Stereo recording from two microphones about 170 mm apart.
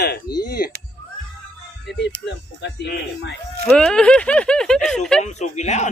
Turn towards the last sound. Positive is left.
turn(degrees=40)  # may be behind; listen again after turning